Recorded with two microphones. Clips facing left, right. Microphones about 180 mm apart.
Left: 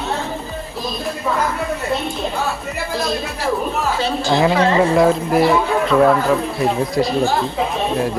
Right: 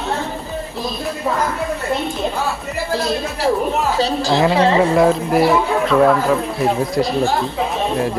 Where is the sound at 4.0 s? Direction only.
35° right (ahead or behind).